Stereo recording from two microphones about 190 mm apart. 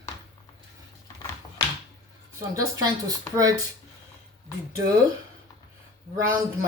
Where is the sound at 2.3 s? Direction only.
20° right (ahead or behind).